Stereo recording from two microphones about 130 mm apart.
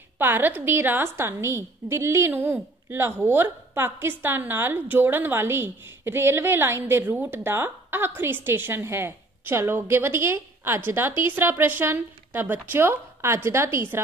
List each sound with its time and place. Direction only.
0.2 s a woman's voice: 15° right (ahead or behind)